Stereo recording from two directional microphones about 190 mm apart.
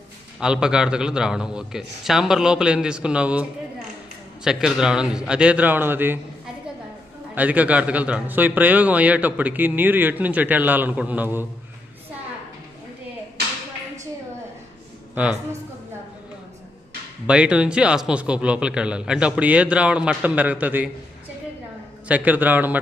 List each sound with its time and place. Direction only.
0.3 s a man's voice: 5° right (ahead or behind)
7.3 s a man's voice: 10° right (ahead or behind)
15.1 s a man's voice: 5° right (ahead or behind)
17.2 s a man's voice: 5° right (ahead or behind)
22.0 s a man's voice: 10° right (ahead or behind)